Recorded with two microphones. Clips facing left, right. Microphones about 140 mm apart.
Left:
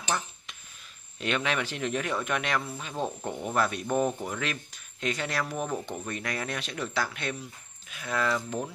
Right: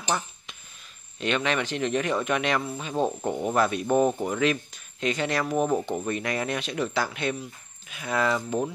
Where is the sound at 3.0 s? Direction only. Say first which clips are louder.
Right 6 dB; 35° right (ahead or behind).